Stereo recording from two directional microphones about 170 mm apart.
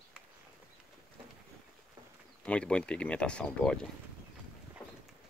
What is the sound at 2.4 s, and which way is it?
Speech, 5° left (ahead or behind).